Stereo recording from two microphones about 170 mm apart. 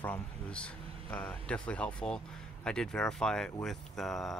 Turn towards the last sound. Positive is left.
turn(degrees=5)  # may be behind; listen again after turning